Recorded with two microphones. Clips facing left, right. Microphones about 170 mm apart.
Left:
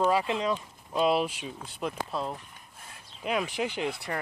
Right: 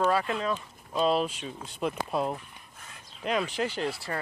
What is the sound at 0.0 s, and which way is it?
Speech, 15° left (ahead or behind).